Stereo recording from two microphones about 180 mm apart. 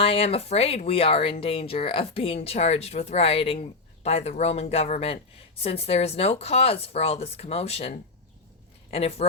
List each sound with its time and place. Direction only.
0.0 s speech: 30° left (ahead or behind)